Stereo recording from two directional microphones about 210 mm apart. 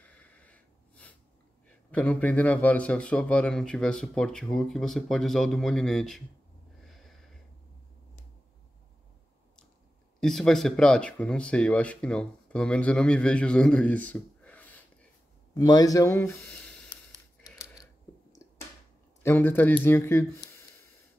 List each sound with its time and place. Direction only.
0.0 s snort: 5° left (ahead or behind)
1.9 s speech: 5° left (ahead or behind)
6.9 s sniff: centre (ahead or behind)
10.2 s speech: centre (ahead or behind)
15.5 s speech: 20° left (ahead or behind)
16.9 s a sound: 15° left (ahead or behind)
19.2 s speech: 10° left (ahead or behind)